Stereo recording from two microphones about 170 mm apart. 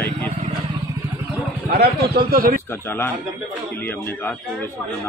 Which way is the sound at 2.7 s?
15° left (ahead or behind).